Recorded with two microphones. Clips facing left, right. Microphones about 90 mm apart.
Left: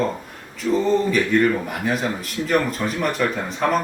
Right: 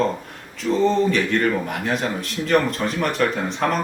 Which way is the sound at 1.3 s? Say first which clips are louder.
Left 2 dB; 5° left (ahead or behind).